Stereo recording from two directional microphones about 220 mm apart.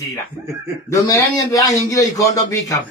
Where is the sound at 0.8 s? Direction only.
15° left (ahead or behind).